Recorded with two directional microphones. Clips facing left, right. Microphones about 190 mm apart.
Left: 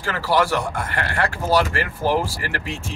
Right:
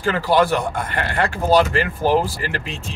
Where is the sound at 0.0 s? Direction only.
20° right (ahead or behind).